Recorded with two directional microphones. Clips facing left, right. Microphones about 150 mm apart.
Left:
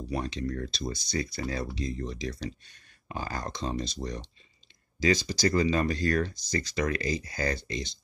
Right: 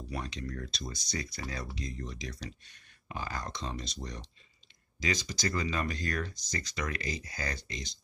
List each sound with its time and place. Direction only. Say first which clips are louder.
0.1 s speech: left 7 dB; 30° left (ahead or behind)